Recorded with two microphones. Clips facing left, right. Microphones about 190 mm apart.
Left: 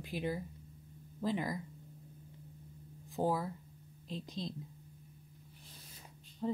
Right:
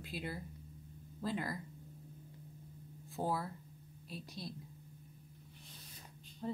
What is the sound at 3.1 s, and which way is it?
A woman's voice, 15° left (ahead or behind).